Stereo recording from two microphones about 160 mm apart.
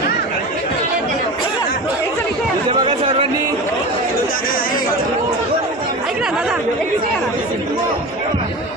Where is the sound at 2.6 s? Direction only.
35° right (ahead or behind).